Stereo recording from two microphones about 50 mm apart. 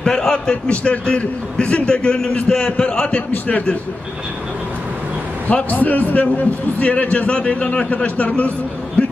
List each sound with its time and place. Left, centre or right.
0.0 s a man's voice: centre; by 3.7 s left
5.5 s a man's voice: left
9.0 s a sound: left